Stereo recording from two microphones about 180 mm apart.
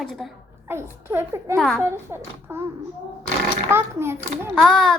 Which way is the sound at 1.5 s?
Centre (ahead or behind).